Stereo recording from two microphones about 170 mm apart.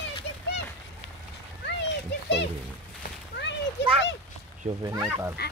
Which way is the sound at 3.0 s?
90° left.